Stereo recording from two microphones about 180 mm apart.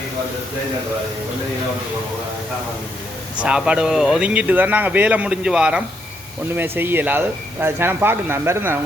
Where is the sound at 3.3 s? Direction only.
5° right (ahead or behind).